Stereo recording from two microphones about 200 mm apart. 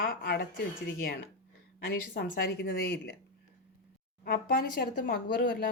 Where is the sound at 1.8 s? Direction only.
50° left (ahead or behind).